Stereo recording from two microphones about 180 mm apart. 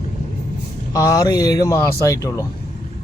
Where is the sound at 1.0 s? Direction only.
20° left (ahead or behind).